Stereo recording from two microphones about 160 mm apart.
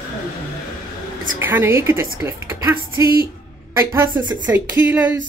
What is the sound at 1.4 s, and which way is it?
A woman's voice, 15° right (ahead or behind).